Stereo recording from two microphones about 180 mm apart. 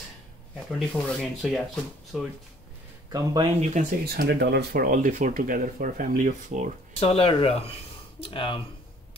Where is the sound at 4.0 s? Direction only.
60° right (ahead or behind).